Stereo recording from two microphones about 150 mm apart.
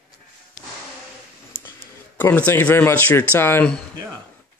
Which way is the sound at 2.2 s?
10° left (ahead or behind).